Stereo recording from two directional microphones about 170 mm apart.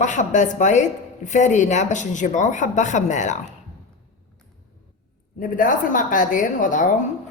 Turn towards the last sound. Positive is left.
turn(degrees=50)  # may be behind; listen again after turning